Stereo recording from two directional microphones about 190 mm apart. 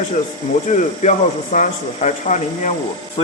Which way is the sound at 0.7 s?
40° left (ahead or behind).